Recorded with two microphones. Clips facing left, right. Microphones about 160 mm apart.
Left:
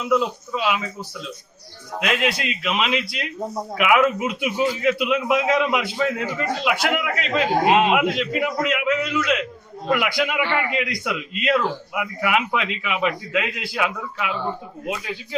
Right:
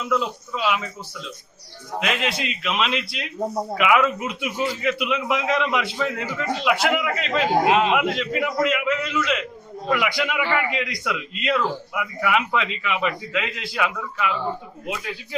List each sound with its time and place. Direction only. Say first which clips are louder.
0.0 s a man's voice: left 3 dB; 5° left (ahead or behind)
2.0 s a man's voice: left 3 dB; 5° left (ahead or behind)
7.7 s a man's voice: left 4 dB; 20° left (ahead or behind)
7.9 s a man's voice: left 1 dB; 5° left (ahead or behind)